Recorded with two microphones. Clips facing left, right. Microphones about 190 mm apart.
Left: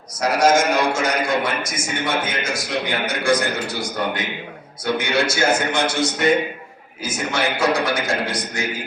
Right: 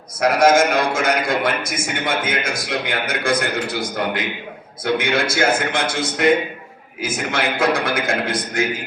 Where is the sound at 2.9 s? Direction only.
55° right (ahead or behind).